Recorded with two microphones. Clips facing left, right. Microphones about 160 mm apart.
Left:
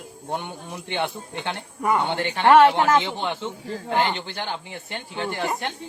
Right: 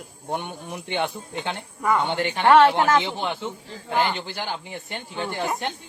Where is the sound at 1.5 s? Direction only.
15° left (ahead or behind).